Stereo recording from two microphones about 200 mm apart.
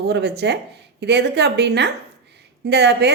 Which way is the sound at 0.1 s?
55° right (ahead or behind).